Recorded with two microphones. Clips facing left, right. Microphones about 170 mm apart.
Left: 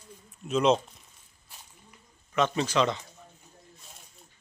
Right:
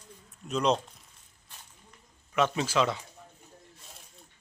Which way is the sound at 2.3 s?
5° right (ahead or behind).